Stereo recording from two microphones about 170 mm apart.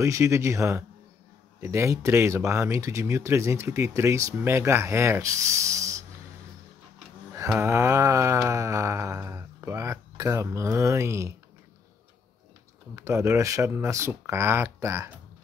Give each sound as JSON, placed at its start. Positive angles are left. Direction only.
{"t": 0.0, "sound": "speech", "side_deg": -15}
{"t": 7.4, "sound": "speech", "side_deg": -15}
{"t": 12.9, "sound": "speech", "side_deg": -15}